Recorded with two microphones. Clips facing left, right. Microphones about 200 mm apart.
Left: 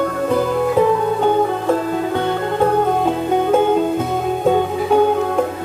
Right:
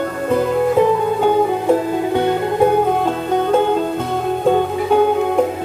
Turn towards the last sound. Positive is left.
turn(degrees=5)  # may be behind; listen again after turning